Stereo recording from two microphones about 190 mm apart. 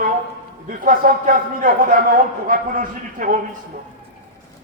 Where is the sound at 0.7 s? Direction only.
45° right (ahead or behind).